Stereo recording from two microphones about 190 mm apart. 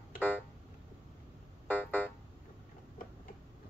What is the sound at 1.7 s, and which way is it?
Music, 10° left (ahead or behind).